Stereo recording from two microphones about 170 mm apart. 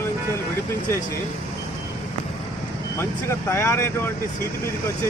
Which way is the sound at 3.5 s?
15° left (ahead or behind).